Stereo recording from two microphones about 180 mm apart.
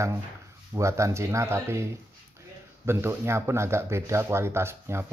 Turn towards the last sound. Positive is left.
turn(degrees=-15)  # may be behind; listen again after turning